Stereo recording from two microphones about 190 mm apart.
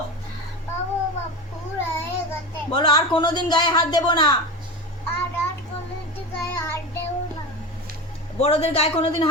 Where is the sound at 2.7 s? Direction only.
25° left (ahead or behind).